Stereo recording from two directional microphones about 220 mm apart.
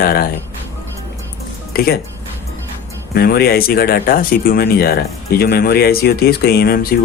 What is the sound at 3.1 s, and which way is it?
Speech, 45° left (ahead or behind).